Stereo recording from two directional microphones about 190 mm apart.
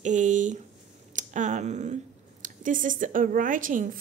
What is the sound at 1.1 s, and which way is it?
A woman's voice, 40° right (ahead or behind).